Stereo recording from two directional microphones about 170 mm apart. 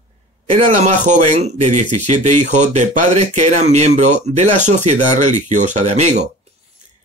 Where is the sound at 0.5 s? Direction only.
45° right (ahead or behind).